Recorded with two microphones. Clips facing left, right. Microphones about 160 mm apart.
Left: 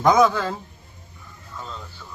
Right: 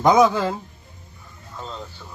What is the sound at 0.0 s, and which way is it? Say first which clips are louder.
Speech: right 1 dB; 20° right (ahead or behind).